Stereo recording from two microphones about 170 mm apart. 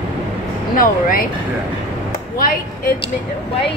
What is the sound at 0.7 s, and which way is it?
Speech, 55° left (ahead or behind).